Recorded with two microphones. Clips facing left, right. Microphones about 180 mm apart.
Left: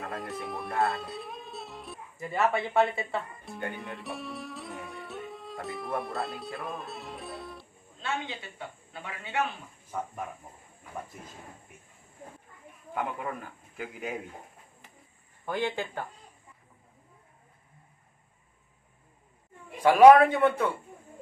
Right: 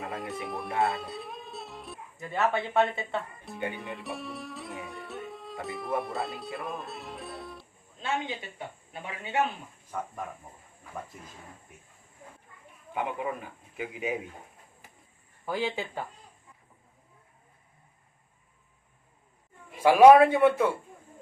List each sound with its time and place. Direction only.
0.0 s speech: centre (ahead or behind)
8.0 s a man's voice: 15° right (ahead or behind)
12.9 s a man's voice: 10° right (ahead or behind)
15.4 s a man's voice: 5° right (ahead or behind)
19.8 s a man's voice: 5° right (ahead or behind)